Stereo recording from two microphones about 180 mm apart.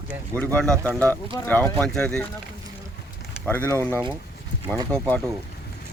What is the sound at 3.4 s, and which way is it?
Speech, 10° left (ahead or behind).